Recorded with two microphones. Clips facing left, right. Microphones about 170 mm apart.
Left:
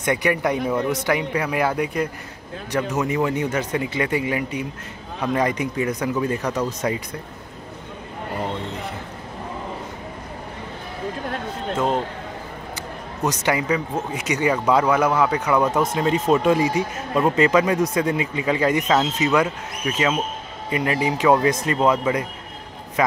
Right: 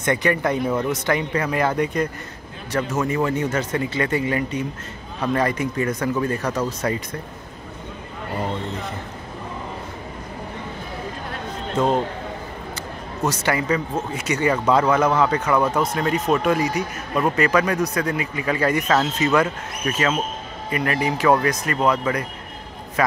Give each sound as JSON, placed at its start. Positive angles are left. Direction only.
{"t": 0.0, "sound": "speech", "side_deg": 10}
{"t": 11.7, "sound": "speech", "side_deg": 5}
{"t": 13.2, "sound": "speech", "side_deg": 15}
{"t": 15.7, "sound": "speech", "side_deg": 20}
{"t": 23.0, "sound": "speech", "side_deg": 15}